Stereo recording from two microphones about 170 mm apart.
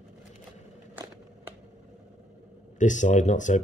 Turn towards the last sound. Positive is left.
turn(degrees=45)  # may be behind; listen again after turning